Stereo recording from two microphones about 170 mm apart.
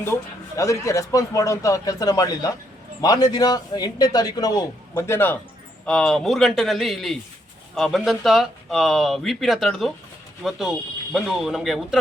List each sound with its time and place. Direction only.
0.0 s speech: 15° left (ahead or behind); by 11.9 s centre (ahead or behind)